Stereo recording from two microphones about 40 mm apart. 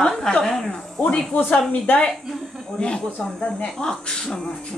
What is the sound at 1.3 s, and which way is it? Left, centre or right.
Speech, left.